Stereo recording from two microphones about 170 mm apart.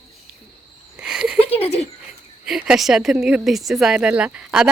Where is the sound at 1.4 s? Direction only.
35° left (ahead or behind).